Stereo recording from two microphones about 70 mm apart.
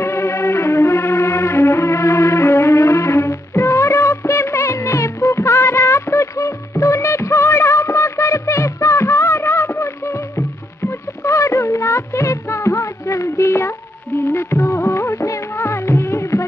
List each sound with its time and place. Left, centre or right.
0.0 s music: left